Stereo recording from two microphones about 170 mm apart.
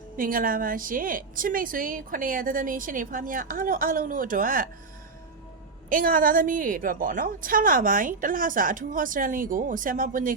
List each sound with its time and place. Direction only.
0.2 s a woman's voice: 55° right (ahead or behind)
5.9 s a woman's voice: 55° right (ahead or behind)